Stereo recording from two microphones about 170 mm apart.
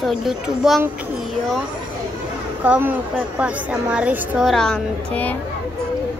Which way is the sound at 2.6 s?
10° right (ahead or behind).